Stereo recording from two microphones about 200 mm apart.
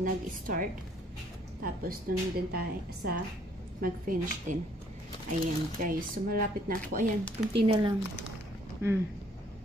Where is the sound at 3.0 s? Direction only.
50° right (ahead or behind).